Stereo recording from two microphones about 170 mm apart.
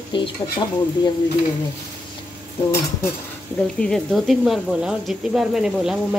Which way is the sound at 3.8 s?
Centre (ahead or behind).